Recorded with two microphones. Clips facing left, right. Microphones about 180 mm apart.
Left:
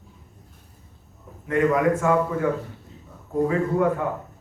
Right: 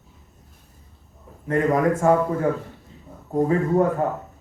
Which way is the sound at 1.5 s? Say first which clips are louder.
Even; 35° right (ahead or behind).